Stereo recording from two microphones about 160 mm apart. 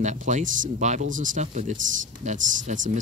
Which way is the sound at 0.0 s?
50° right (ahead or behind).